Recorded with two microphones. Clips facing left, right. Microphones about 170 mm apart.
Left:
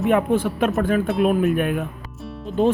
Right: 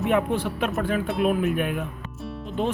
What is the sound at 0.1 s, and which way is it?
Speech, 50° left (ahead or behind).